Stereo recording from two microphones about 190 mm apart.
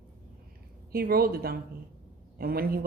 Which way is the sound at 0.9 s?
55° right (ahead or behind).